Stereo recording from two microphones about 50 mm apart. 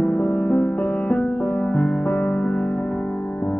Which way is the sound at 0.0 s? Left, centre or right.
Left.